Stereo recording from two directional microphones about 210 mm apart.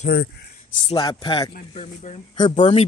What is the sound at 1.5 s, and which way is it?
Speech, 35° left (ahead or behind).